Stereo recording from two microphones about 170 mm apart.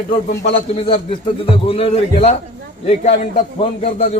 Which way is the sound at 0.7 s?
30° left (ahead or behind).